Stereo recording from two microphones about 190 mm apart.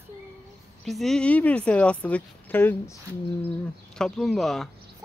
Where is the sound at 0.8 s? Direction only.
Centre (ahead or behind).